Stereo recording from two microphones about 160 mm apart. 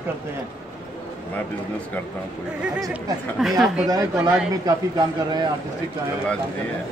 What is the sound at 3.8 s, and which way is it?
A man's voice, 25° right (ahead or behind).